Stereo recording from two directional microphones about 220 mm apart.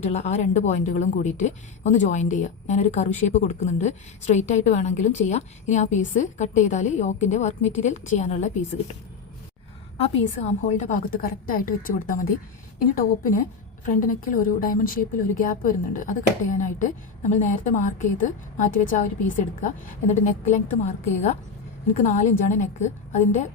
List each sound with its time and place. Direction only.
0.1 s a woman's voice: 30° left (ahead or behind)
10.0 s a woman's voice: 30° left (ahead or behind)
20.1 s a woman's voice: 35° left (ahead or behind)